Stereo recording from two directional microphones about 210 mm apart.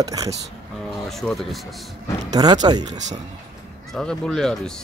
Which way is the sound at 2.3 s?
20° right (ahead or behind).